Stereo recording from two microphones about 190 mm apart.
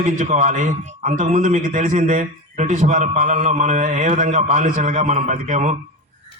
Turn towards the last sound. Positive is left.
turn(degrees=-40)  # may be behind; listen again after turning